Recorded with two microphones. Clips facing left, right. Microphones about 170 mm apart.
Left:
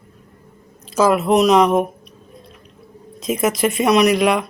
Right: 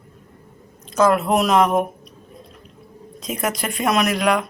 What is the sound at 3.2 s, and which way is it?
Speech, 5° left (ahead or behind).